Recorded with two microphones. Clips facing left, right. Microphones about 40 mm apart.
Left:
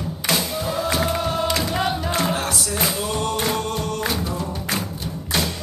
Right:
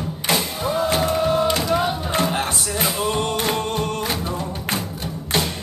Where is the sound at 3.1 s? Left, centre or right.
Right.